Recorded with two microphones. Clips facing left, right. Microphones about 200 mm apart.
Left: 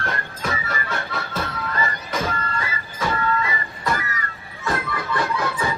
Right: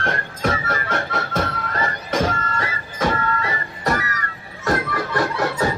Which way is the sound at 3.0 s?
45° right (ahead or behind).